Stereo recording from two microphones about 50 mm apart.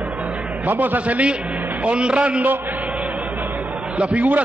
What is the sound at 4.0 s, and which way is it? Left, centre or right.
Speech, right.